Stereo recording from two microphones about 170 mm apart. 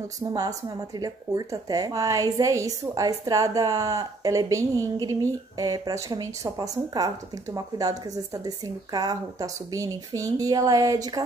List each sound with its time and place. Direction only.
0.2 s speech: 20° right (ahead or behind)